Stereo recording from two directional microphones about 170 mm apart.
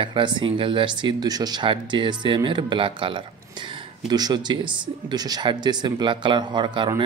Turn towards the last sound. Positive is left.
turn(degrees=-25)  # may be behind; listen again after turning